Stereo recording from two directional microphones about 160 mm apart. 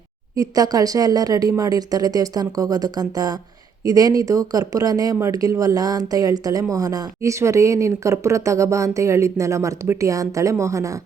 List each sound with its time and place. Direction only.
0.3 s speech: 20° right (ahead or behind)